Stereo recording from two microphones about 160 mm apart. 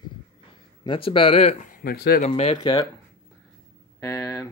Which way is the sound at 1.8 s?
70° left (ahead or behind).